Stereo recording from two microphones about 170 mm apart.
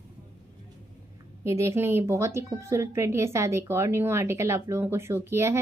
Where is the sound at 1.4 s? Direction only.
15° right (ahead or behind).